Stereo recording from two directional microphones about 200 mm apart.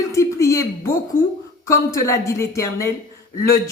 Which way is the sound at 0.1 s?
15° left (ahead or behind).